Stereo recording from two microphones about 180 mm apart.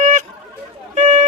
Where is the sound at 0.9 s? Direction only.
40° right (ahead or behind).